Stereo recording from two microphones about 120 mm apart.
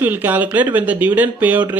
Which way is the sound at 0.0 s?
15° right (ahead or behind).